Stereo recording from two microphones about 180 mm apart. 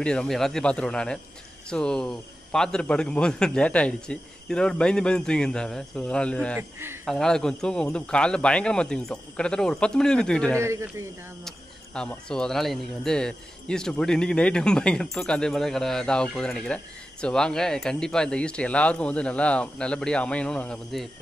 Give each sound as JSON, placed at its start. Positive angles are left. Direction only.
{"t": 0.0, "sound": "speech", "side_deg": 5}
{"t": 10.6, "sound": "speech", "side_deg": -15}
{"t": 11.4, "sound": "speech", "side_deg": 5}